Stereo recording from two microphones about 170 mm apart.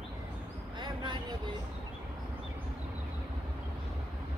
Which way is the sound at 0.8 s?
25° right (ahead or behind).